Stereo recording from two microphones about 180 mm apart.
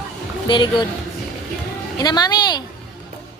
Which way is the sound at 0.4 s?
25° left (ahead or behind).